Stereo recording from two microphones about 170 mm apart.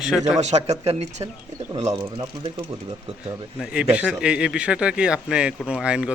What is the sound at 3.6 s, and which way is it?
Speech, 5° right (ahead or behind).